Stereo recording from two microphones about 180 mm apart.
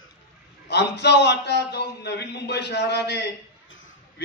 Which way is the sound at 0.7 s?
70° left (ahead or behind).